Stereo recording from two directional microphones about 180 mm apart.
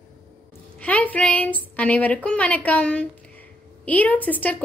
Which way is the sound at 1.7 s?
10° left (ahead or behind).